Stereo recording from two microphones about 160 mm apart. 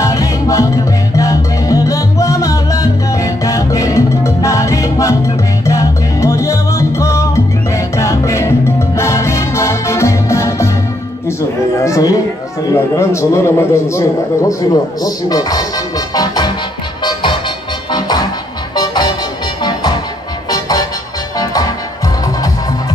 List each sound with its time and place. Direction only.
0.0 s music: 20° left (ahead or behind)
11.8 s a man's voice: 20° left (ahead or behind)
16.2 s music: 25° left (ahead or behind)